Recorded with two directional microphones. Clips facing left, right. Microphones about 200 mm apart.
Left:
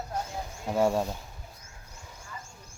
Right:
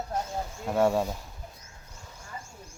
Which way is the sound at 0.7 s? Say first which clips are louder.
Right 1 dB; centre (ahead or behind).